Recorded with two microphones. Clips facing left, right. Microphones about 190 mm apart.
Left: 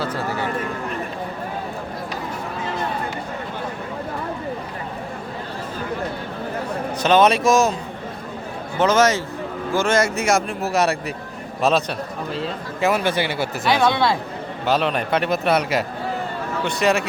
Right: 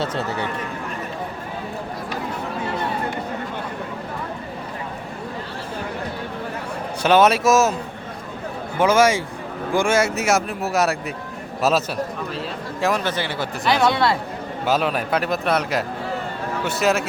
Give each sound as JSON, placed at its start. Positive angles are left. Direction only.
{"t": 0.0, "sound": "a man's voice", "side_deg": -25}
{"t": 7.0, "sound": "speech", "side_deg": -10}
{"t": 8.8, "sound": "a man's voice", "side_deg": -10}
{"t": 12.8, "sound": "speech", "side_deg": 10}
{"t": 14.7, "sound": "speech", "side_deg": -5}